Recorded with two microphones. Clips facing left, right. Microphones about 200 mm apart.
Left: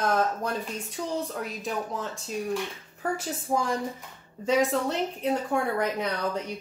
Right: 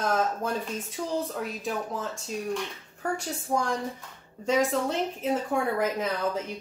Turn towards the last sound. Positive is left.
turn(degrees=0)  # may be behind; listen again after turning